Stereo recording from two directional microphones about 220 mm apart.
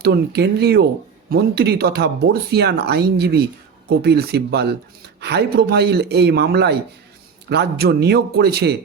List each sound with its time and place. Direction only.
0.0 s speech: 50° right (ahead or behind)